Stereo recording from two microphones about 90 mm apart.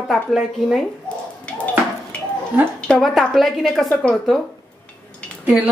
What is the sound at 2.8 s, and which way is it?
A woman's voice, 10° left (ahead or behind).